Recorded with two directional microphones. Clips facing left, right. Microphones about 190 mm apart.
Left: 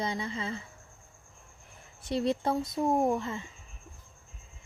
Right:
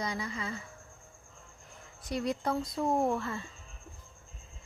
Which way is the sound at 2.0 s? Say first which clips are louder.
Left 4 dB; 25° left (ahead or behind).